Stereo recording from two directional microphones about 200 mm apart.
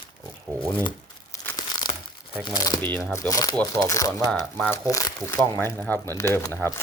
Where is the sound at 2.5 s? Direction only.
20° left (ahead or behind).